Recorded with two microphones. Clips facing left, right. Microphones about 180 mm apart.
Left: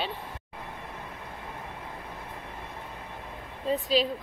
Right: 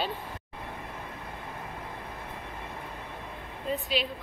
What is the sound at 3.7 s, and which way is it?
Speech, 40° left (ahead or behind).